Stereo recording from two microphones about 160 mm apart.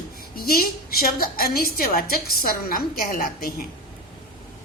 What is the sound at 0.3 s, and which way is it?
A woman's voice, 70° left (ahead or behind).